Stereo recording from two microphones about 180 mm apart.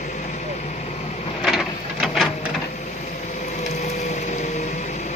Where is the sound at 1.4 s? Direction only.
Centre (ahead or behind).